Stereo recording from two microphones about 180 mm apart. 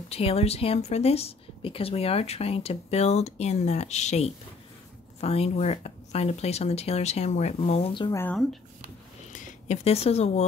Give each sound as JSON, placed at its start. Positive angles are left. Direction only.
{"t": 0.1, "sound": "a woman's voice", "side_deg": 35}
{"t": 9.3, "sound": "speech", "side_deg": 40}